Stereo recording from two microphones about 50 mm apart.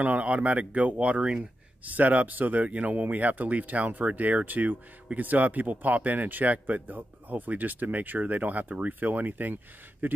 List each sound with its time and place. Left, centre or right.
0.0 s speech: right